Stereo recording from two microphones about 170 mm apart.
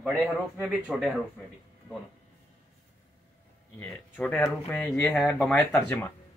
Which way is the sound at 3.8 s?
10° left (ahead or behind).